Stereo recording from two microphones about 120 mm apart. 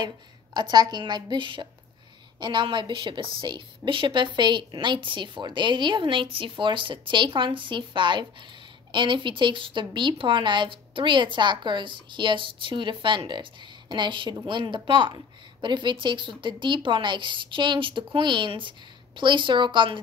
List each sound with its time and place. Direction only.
0.6 s a woman's voice: 35° right (ahead or behind)